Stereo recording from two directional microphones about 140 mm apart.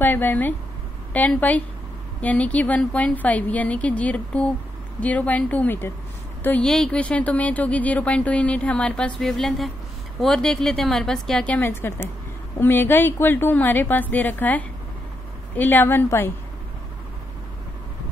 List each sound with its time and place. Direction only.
0.0 s a woman's voice: 15° left (ahead or behind)